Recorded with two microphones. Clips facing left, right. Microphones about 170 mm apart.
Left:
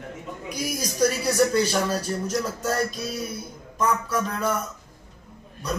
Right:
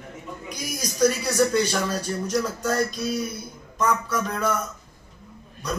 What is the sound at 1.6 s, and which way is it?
Speech, 5° left (ahead or behind).